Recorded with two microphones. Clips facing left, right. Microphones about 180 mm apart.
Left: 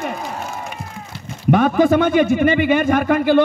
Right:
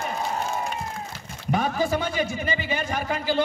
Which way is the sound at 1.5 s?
60° left (ahead or behind).